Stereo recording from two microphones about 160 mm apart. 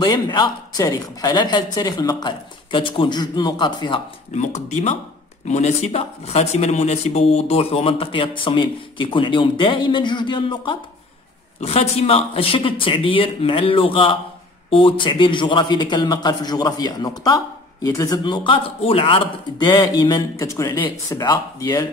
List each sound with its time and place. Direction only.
0.0 s a woman's voice: 25° left (ahead or behind)
4.3 s a woman's voice: 45° left (ahead or behind); by 21.8 s 20° left (ahead or behind)